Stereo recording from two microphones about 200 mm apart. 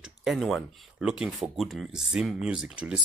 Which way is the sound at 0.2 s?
Centre (ahead or behind).